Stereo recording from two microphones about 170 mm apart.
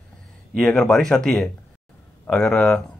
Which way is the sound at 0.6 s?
5° left (ahead or behind).